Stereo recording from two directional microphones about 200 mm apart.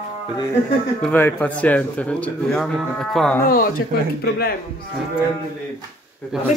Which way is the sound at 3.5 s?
45° left (ahead or behind).